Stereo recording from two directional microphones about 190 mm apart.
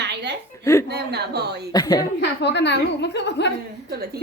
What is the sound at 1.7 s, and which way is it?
Speech, 20° left (ahead or behind).